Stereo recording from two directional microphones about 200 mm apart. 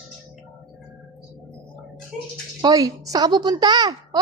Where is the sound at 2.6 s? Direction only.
20° right (ahead or behind).